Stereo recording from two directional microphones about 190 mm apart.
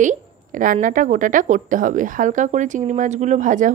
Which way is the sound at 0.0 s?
45° right (ahead or behind).